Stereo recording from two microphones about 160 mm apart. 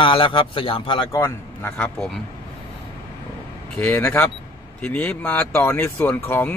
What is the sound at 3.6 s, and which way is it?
Speech, 10° left (ahead or behind).